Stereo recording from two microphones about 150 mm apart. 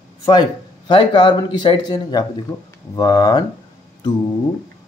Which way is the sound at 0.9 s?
30° left (ahead or behind).